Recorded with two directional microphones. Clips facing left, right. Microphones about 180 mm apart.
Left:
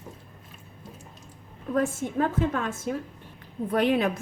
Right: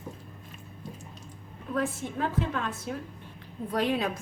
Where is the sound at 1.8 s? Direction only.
45° left (ahead or behind).